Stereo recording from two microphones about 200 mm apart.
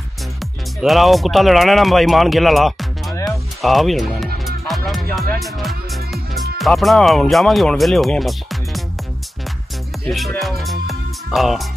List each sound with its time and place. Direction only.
0.4 s speech: centre (ahead or behind)
3.3 s music: centre (ahead or behind)
5.4 s speech: centre (ahead or behind)
10.0 s music: centre (ahead or behind)